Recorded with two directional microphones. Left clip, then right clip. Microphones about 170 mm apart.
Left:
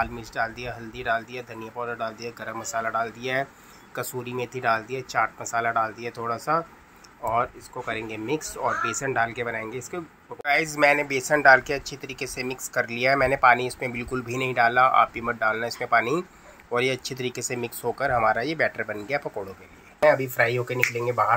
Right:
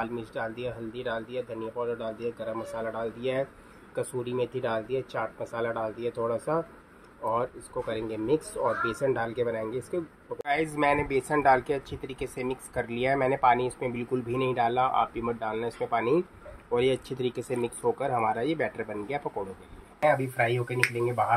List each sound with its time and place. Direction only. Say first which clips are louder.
0.0 s speech: left 5 dB; 5° left (ahead or behind)
7.9 s speech: even; centre (ahead or behind)